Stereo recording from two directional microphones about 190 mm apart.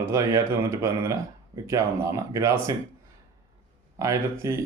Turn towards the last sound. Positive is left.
turn(degrees=-15)  # may be behind; listen again after turning